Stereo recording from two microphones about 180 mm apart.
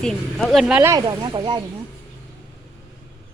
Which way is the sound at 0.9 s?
20° right (ahead or behind).